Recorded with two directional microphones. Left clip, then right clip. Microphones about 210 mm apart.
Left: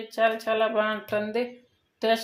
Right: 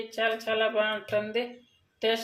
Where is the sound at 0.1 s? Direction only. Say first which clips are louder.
Left 5 dB; 25° left (ahead or behind).